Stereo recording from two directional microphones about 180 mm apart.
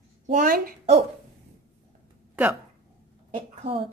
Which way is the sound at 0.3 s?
50° right (ahead or behind).